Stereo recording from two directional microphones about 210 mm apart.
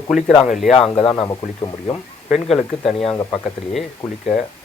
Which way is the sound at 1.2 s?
20° left (ahead or behind).